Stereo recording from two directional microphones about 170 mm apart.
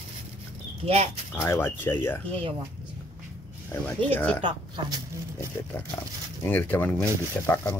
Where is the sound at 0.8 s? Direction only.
40° right (ahead or behind).